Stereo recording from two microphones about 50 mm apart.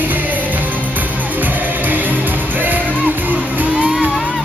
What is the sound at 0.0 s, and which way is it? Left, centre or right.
Music, right.